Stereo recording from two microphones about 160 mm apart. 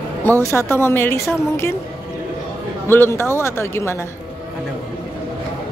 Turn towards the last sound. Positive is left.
turn(degrees=15)  # may be behind; listen again after turning